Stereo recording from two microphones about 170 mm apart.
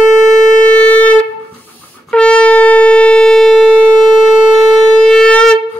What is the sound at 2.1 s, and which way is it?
Shofar, 5° left (ahead or behind).